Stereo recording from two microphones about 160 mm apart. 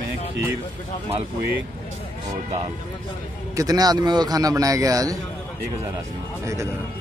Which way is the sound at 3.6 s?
25° right (ahead or behind).